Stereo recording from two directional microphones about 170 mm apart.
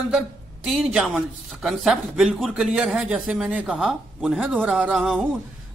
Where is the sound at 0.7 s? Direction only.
5° right (ahead or behind).